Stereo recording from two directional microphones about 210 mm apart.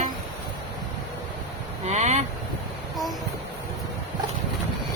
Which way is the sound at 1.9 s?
35° right (ahead or behind).